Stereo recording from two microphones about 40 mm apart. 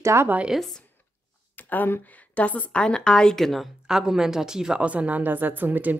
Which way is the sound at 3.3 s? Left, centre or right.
Centre.